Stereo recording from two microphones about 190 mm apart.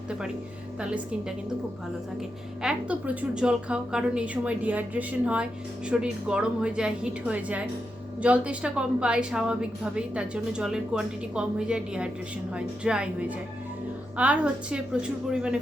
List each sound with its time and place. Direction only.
0.8 s a woman's voice: 5° right (ahead or behind)
2.6 s a woman's voice: 5° right (ahead or behind)